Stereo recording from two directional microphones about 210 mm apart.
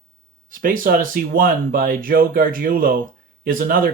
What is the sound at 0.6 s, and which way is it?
Speech, 40° right (ahead or behind).